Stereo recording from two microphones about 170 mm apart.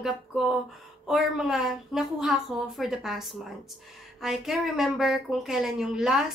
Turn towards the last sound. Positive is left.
turn(degrees=-5)  # may be behind; listen again after turning